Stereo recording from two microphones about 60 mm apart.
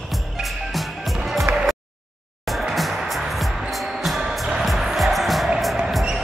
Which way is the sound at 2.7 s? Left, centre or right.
Centre.